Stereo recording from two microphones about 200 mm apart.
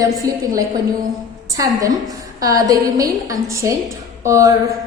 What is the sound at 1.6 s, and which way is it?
A woman's voice, 15° right (ahead or behind).